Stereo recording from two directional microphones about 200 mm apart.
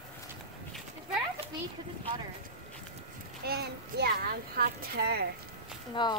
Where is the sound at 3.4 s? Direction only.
50° right (ahead or behind).